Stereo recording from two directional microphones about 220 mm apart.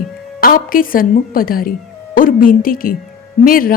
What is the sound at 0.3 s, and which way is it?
A woman's voice, 40° left (ahead or behind).